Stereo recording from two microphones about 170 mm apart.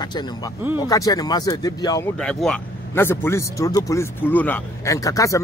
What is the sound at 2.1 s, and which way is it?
Speech, 5° left (ahead or behind).